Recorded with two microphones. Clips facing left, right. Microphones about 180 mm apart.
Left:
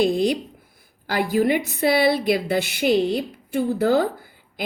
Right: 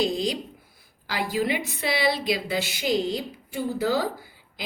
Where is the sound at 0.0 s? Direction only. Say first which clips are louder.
Left 6 dB; 60° left (ahead or behind).